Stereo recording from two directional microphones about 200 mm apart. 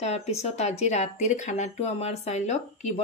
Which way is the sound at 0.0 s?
30° left (ahead or behind).